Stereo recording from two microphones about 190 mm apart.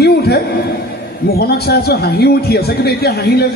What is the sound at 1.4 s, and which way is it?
A man's voice, 55° left (ahead or behind).